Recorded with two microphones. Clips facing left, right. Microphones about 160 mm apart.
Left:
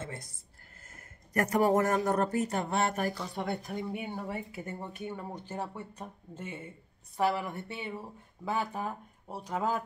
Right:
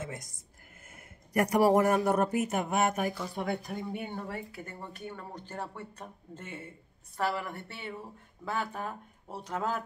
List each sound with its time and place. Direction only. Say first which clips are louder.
0.0 s a sound: right 1 dB; 15° right (ahead or behind)
0.9 s speech: right 2 dB; 10° right (ahead or behind); by 4.4 s 5° left (ahead or behind)
4.5 s speech: left 3 dB; 20° left (ahead or behind); by 6.7 s centre (ahead or behind)
7.3 s speech: left 2 dB; 15° left (ahead or behind)